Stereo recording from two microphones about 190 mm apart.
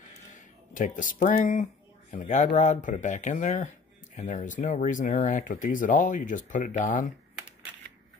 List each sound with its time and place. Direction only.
0.7 s speech: 45° left (ahead or behind)